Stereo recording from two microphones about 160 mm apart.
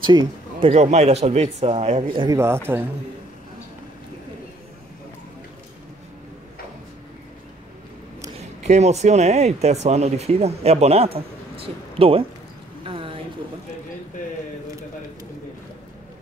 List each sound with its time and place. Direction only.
0.0 s a man's voice: 30° right (ahead or behind)
0.7 s speech: 45° right (ahead or behind)
2.3 s speech: 15° right (ahead or behind)
8.6 s speech: 45° right (ahead or behind)
12.8 s a sound: 35° right (ahead or behind)